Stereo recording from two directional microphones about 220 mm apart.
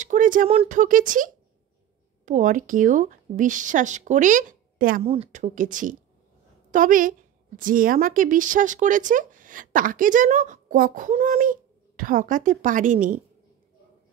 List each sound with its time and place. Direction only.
0.0 s a woman's voice: 35° right (ahead or behind)
5.0 s a woman's voice: 25° right (ahead or behind)